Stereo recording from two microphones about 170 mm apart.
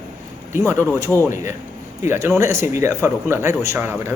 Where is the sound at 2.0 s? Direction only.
15° right (ahead or behind).